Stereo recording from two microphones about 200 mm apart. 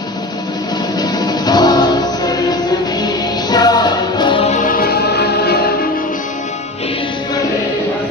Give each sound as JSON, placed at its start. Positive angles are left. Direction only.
{"t": 0.9, "sound": "music", "side_deg": 20}